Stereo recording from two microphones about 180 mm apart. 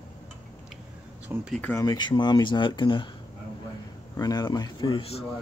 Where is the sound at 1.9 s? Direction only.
25° left (ahead or behind).